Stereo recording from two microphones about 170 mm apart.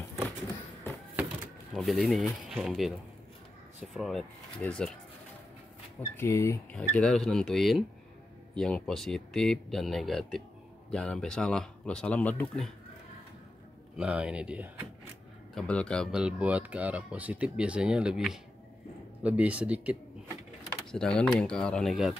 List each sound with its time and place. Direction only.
1.7 s speech: centre (ahead or behind)
3.9 s speech: centre (ahead or behind)
5.9 s speech: 15° left (ahead or behind)
6.7 s speech: 5° left (ahead or behind)
13.9 s speech: 5° right (ahead or behind)
15.5 s speech: 5° left (ahead or behind)
16.1 s speech: 5° right (ahead or behind)
20.9 s speech: 5° left (ahead or behind)